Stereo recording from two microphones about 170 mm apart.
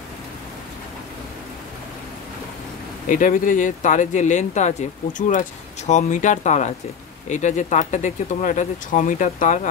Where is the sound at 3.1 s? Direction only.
50° left (ahead or behind).